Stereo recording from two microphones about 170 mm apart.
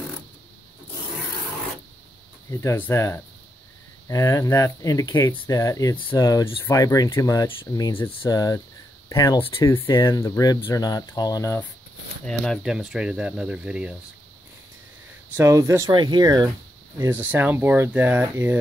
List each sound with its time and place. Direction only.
2.5 s speech: 15° left (ahead or behind)
12.3 s speech: centre (ahead or behind)
15.3 s speech: 15° right (ahead or behind)
17.0 s speech: 10° right (ahead or behind)